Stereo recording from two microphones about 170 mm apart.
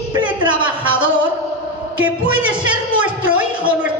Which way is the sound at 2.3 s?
5° right (ahead or behind).